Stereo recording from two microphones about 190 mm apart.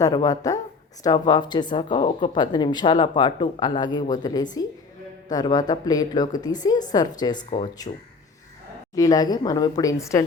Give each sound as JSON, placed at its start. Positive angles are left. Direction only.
{"t": 0.0, "sound": "speech", "side_deg": 20}
{"t": 9.0, "sound": "speech", "side_deg": 20}